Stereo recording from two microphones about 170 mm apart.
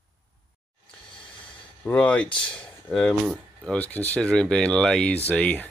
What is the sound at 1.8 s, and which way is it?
Speech, 10° left (ahead or behind).